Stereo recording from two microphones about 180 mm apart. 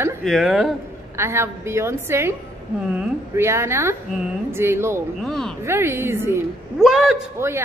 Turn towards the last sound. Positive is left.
turn(degrees=-15)  # may be behind; listen again after turning